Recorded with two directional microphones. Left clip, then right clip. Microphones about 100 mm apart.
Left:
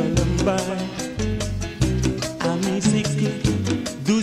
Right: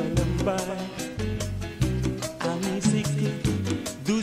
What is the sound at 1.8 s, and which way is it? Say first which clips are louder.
Music: left 6 dB; 30° left (ahead or behind).